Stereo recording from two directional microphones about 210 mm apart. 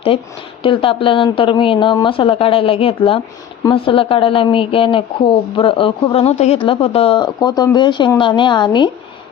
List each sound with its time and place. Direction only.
0.1 s a woman's voice: 25° left (ahead or behind)